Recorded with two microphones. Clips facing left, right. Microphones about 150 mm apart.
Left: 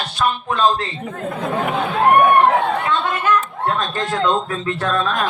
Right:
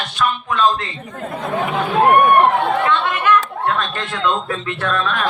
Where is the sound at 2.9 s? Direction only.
35° left (ahead or behind).